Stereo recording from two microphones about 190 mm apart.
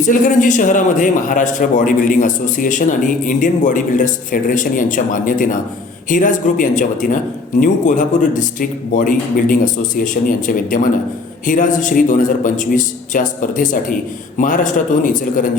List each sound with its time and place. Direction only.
0.0 s a man's voice: 40° left (ahead or behind)